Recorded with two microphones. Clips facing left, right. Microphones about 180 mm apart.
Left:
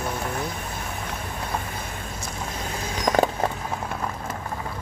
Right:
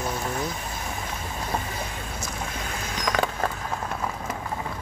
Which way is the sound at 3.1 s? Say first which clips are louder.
Left 5 dB; 40° left (ahead or behind).